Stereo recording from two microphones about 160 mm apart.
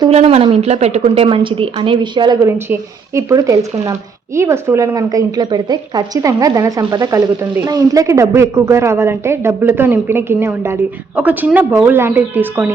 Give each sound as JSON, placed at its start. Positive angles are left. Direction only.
{"t": 0.1, "sound": "a woman's voice", "side_deg": -40}